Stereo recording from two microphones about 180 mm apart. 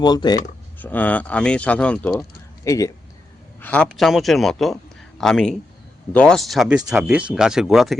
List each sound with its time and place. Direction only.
0.0 s speech: 20° left (ahead or behind)
0.8 s speech: 10° left (ahead or behind)
2.6 s a man's voice: 20° left (ahead or behind); by 7.9 s centre (ahead or behind)